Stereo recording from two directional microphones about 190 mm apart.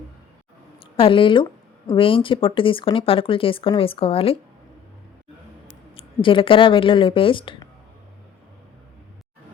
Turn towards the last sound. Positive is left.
turn(degrees=25)  # may be behind; listen again after turning